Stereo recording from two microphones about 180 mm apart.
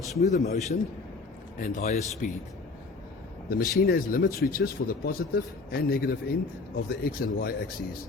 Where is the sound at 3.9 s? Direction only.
50° left (ahead or behind).